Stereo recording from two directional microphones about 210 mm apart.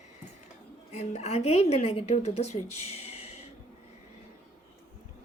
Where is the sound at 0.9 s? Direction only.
30° left (ahead or behind).